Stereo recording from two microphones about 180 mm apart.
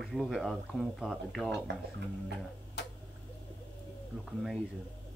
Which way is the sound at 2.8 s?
75° left (ahead or behind).